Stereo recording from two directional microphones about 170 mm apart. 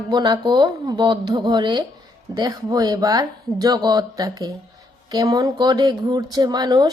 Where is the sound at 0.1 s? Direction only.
25° right (ahead or behind).